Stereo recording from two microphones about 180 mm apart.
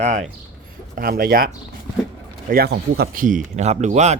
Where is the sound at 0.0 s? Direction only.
40° right (ahead or behind).